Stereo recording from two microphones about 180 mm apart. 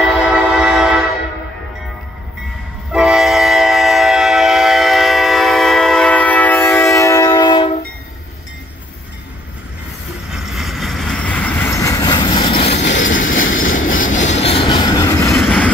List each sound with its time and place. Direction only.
0.0 s train: 5° right (ahead or behind)
2.9 s train: 5° right (ahead or behind); by 7.8 s 25° left (ahead or behind)
10.3 s train: centre (ahead or behind); by 12.8 s 30° left (ahead or behind)
13.0 s train: 45° left (ahead or behind)
14.3 s train: 35° left (ahead or behind)
15.3 s vehicle: 5° left (ahead or behind)